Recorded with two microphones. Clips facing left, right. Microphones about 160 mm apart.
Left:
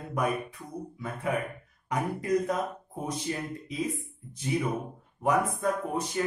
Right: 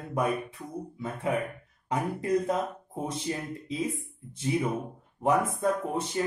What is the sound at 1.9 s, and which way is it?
Speech, 30° right (ahead or behind).